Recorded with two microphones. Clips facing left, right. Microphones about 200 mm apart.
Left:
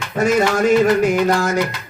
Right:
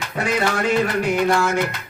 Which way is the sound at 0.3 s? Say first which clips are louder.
Left 5 dB; 45° left (ahead or behind).